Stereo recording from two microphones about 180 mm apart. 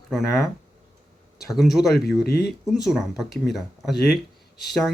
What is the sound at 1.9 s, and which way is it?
Speech, 60° left (ahead or behind).